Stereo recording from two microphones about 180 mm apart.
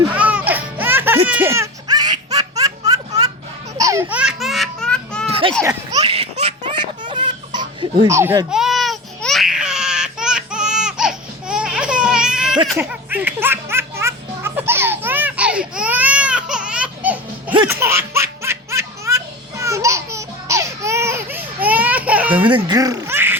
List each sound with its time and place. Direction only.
0.1 s music: 10° right (ahead or behind)
1.3 s laughter: 15° right (ahead or behind); by 5.2 s 5° left (ahead or behind)
5.2 s children playing: 30° right (ahead or behind)
6.0 s laughter: 35° right (ahead or behind)
8.0 s speech: 15° right (ahead or behind)
8.5 s baby cry: centre (ahead or behind)
12.7 s music: 10° right (ahead or behind)
17.7 s baby laughter: 15° right (ahead or behind)
22.4 s a sound: 25° right (ahead or behind)